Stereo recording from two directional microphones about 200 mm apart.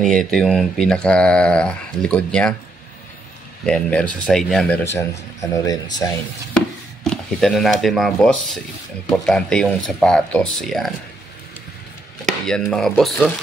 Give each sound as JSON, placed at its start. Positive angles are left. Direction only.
{"t": 0.0, "sound": "speech", "side_deg": 5}
{"t": 3.6, "sound": "speech", "side_deg": 5}
{"t": 7.0, "sound": "speech", "side_deg": 5}
{"t": 12.4, "sound": "speech", "side_deg": 0}